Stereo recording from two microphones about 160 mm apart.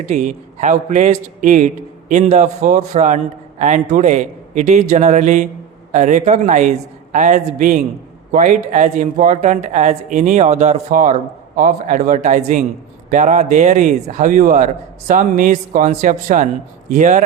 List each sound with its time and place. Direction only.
0.0 s speech: 50° right (ahead or behind)